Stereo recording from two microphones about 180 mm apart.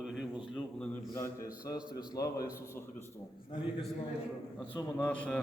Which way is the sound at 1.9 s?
25° left (ahead or behind).